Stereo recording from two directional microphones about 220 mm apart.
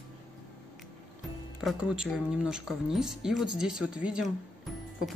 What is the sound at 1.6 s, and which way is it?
Speech, 5° right (ahead or behind).